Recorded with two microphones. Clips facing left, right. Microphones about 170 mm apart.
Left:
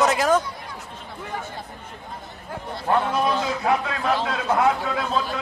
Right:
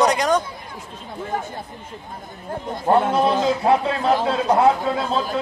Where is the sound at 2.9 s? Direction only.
30° right (ahead or behind).